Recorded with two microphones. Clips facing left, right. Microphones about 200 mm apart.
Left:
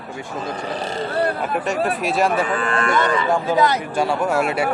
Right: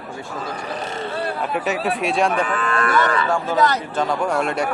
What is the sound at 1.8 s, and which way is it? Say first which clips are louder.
Speech: right 1 dB; centre (ahead or behind).